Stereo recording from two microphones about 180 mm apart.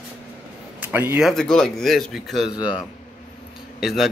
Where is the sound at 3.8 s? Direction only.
Centre (ahead or behind).